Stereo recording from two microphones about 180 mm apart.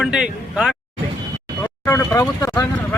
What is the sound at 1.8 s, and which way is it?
Speech, 15° left (ahead or behind).